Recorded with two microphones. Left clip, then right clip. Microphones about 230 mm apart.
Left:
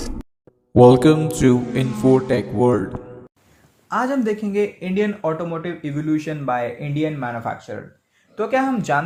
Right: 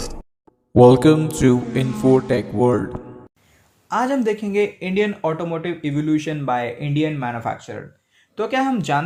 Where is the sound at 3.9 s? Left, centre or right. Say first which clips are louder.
Right 1 dB; right.